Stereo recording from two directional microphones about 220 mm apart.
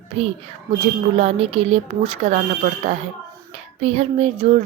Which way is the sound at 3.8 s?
30° right (ahead or behind).